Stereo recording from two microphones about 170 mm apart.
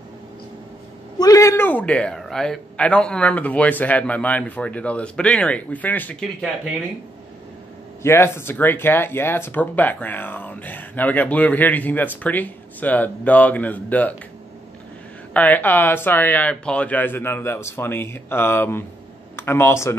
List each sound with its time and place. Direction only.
1.1 s speech: 20° left (ahead or behind)
8.0 s speech: 15° left (ahead or behind)
15.3 s speech: 10° left (ahead or behind)